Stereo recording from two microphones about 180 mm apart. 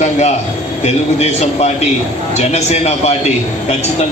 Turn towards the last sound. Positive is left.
turn(degrees=35)  # may be behind; listen again after turning